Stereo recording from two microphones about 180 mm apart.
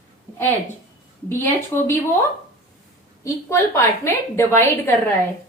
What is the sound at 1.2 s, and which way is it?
Speech, 15° left (ahead or behind).